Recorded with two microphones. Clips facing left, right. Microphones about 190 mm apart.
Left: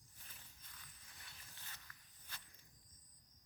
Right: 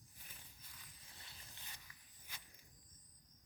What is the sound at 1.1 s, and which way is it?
Walk, 15° right (ahead or behind).